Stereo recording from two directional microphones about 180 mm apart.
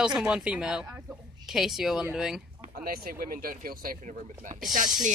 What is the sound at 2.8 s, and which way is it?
Speech, 55° right (ahead or behind).